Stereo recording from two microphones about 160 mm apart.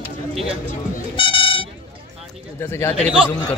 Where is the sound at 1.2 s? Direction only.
35° left (ahead or behind).